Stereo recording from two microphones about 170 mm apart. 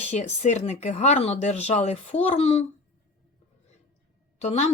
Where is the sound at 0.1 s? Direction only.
40° left (ahead or behind).